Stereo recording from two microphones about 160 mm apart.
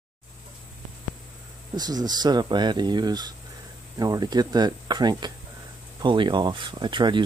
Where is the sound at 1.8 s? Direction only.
25° right (ahead or behind).